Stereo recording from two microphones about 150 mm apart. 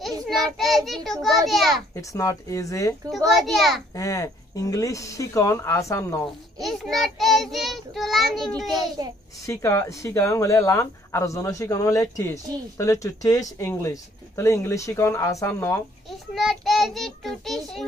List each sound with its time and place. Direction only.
0.0 s child singing: centre (ahead or behind)
0.6 s a child's voice: centre (ahead or behind)
2.0 s speech: 20° left (ahead or behind)
3.4 s a child's voice: centre (ahead or behind)
3.9 s speech: 25° left (ahead or behind)
6.2 s a child's voice: centre (ahead or behind)
8.7 s a child's voice: 25° right (ahead or behind)
9.5 s speech: 20° left (ahead or behind)
16.1 s a child's voice: centre (ahead or behind)